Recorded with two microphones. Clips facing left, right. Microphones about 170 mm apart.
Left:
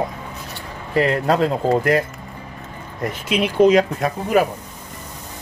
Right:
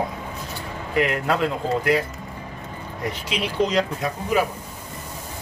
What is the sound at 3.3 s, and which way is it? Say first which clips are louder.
Speech: left 8 dB; 50° left (ahead or behind).